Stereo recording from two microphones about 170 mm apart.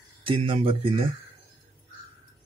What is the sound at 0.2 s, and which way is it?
Speech, 30° right (ahead or behind).